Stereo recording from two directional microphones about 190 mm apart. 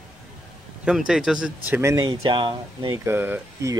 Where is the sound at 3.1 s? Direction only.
10° right (ahead or behind).